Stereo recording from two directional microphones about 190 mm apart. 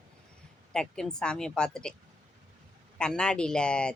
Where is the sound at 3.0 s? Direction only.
5° left (ahead or behind).